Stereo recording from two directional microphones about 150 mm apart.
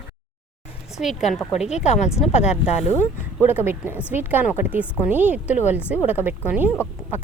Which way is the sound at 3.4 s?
15° right (ahead or behind).